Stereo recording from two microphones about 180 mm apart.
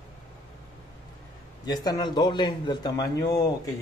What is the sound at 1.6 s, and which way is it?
Speech, 20° left (ahead or behind).